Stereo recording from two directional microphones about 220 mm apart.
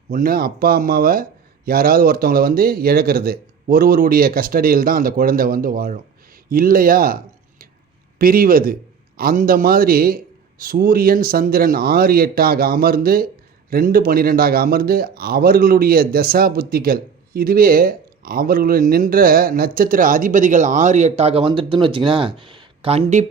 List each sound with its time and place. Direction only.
0.1 s a man's voice: 40° right (ahead or behind)
8.2 s a man's voice: 40° right (ahead or behind)